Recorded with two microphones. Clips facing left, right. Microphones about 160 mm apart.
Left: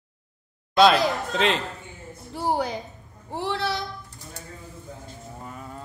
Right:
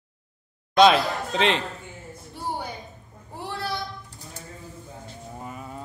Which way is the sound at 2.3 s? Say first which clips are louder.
Left 7 dB; 90° left.